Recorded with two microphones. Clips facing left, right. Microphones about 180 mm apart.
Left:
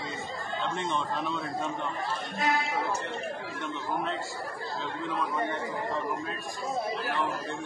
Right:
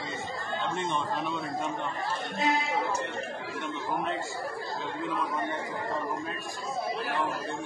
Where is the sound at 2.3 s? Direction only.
25° right (ahead or behind).